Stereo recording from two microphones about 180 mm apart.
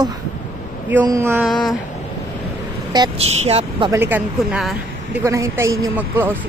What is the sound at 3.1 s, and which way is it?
Speech, 35° right (ahead or behind).